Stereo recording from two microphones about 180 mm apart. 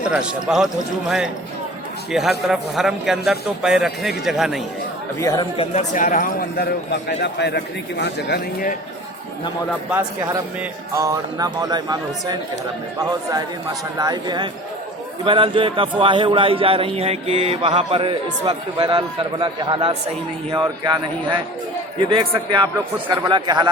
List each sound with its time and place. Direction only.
0.1 s a man's voice: centre (ahead or behind)
2.1 s a man's voice: 5° right (ahead or behind)
5.2 s speech: 20° left (ahead or behind)
5.5 s speech: 40° left (ahead or behind); by 8.7 s 65° left (ahead or behind)
10.9 s a man's voice: 20° right (ahead or behind)
16.0 s a sound: 30° right (ahead or behind)
20.5 s a man's voice: 25° right (ahead or behind)